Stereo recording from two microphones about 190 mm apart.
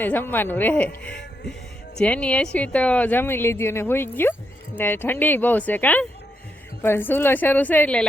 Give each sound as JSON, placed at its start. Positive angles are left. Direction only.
{"t": 0.0, "sound": "speech", "side_deg": 10}